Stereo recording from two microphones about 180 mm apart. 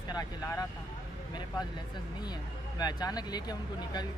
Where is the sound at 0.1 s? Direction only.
20° left (ahead or behind).